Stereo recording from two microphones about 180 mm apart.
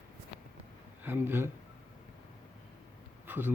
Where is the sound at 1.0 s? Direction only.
10° right (ahead or behind).